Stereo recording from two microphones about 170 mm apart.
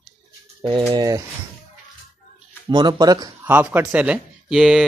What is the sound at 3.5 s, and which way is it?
Speech, 10° right (ahead or behind).